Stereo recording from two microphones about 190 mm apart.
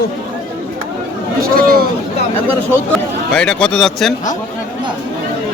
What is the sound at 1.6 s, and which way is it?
Speech, 50° right (ahead or behind).